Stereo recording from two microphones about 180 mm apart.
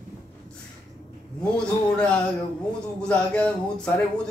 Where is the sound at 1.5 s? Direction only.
5° left (ahead or behind).